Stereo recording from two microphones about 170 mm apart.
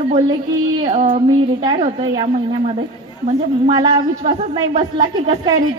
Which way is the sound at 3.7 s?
25° right (ahead or behind).